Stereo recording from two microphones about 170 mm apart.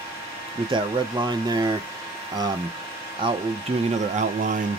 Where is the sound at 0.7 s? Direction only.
25° right (ahead or behind).